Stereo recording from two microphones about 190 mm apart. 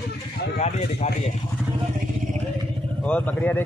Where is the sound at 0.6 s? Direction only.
35° left (ahead or behind).